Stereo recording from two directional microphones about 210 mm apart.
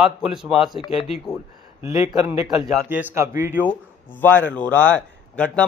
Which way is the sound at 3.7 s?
10° left (ahead or behind).